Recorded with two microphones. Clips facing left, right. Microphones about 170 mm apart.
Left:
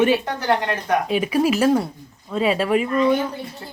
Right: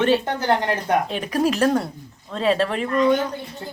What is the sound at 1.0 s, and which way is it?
Speech, 5° left (ahead or behind).